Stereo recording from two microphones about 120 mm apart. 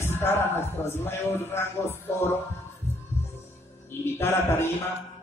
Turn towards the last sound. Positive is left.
turn(degrees=20)  # may be behind; listen again after turning